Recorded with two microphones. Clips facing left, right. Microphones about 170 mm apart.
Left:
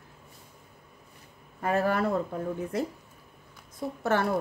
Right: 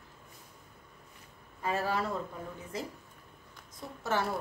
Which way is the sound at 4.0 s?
55° left (ahead or behind).